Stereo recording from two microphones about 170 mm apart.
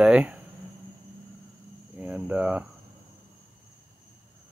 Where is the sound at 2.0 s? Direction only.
10° right (ahead or behind).